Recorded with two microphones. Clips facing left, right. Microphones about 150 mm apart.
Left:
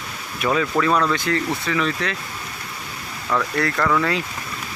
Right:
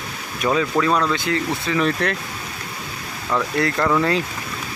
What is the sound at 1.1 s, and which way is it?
Speech, 25° right (ahead or behind).